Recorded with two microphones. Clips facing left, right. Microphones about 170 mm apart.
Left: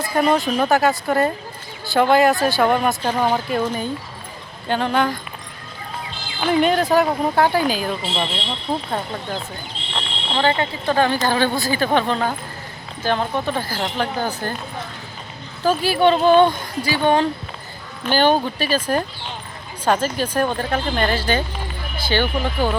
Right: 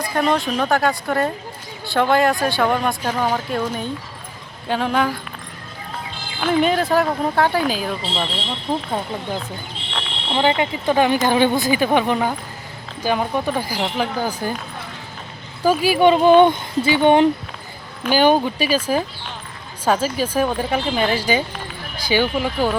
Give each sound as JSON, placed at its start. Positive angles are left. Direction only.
{"t": 0.1, "sound": "speech", "side_deg": 5}
{"t": 4.7, "sound": "speech", "side_deg": 0}
{"t": 6.4, "sound": "speech", "side_deg": 0}
{"t": 10.3, "sound": "speech", "side_deg": -15}
{"t": 15.6, "sound": "speech", "side_deg": -10}
{"t": 18.0, "sound": "speech", "side_deg": -10}